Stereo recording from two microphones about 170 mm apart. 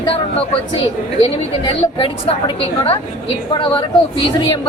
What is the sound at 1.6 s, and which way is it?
A woman's voice, 30° left (ahead or behind).